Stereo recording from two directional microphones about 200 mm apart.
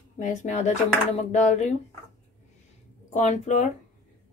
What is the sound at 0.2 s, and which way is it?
Dishes, 35° left (ahead or behind).